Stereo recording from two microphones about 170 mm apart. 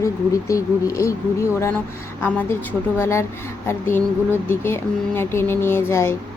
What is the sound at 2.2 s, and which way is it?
Speech, 10° left (ahead or behind).